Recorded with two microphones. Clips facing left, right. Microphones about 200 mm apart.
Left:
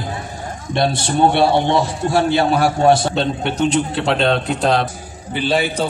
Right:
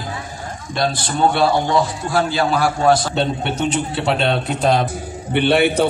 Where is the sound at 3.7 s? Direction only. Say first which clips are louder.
Left 2 dB; 5° right (ahead or behind).